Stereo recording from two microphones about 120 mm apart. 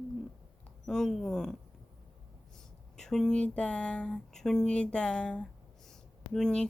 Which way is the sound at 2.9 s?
5° left (ahead or behind).